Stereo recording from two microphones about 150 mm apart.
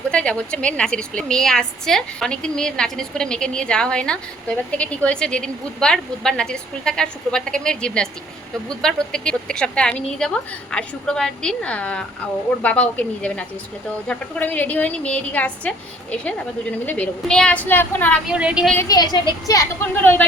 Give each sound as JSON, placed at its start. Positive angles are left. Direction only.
{"t": 0.1, "sound": "a woman's voice", "side_deg": 5}
{"t": 16.8, "sound": "a woman's voice", "side_deg": 10}
{"t": 18.3, "sound": "a woman's voice", "side_deg": -5}
{"t": 18.9, "sound": "a woman's voice", "side_deg": 25}